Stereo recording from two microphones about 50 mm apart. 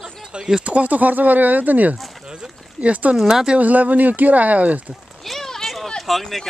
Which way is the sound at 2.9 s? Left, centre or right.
Right.